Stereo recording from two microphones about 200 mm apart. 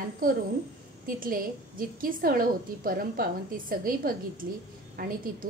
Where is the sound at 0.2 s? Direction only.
45° right (ahead or behind).